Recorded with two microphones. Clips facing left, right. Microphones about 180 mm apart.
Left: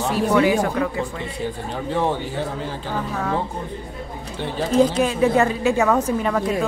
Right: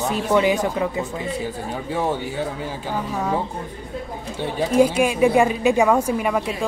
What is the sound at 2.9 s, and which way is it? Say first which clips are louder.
A woman's voice: right 1 dB; 15° right (ahead or behind).